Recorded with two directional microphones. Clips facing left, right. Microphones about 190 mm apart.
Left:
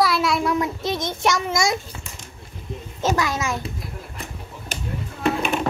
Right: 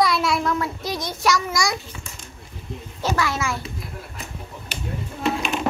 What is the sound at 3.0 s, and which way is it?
Speech, 20° left (ahead or behind).